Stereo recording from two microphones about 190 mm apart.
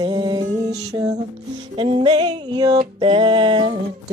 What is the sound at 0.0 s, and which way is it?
Music, 20° right (ahead or behind).